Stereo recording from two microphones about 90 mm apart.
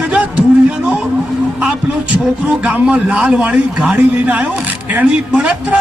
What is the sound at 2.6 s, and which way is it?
A man's voice, 10° right (ahead or behind).